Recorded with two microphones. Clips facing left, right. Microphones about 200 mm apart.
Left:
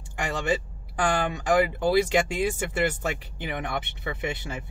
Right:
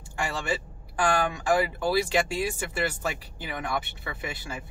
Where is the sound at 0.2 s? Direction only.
20° left (ahead or behind).